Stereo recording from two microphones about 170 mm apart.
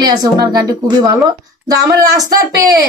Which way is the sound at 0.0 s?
25° right (ahead or behind).